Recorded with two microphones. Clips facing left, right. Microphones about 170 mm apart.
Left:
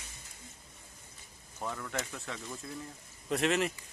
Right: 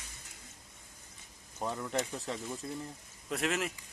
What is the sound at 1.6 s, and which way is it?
Speech, 25° right (ahead or behind).